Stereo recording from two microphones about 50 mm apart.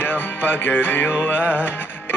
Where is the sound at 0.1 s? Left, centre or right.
Left.